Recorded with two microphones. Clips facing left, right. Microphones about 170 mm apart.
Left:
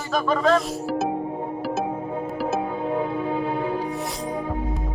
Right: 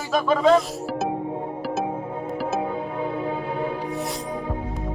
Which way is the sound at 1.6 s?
Centre (ahead or behind).